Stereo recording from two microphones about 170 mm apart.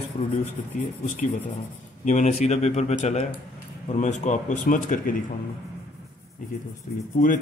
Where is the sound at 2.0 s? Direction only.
45° left (ahead or behind).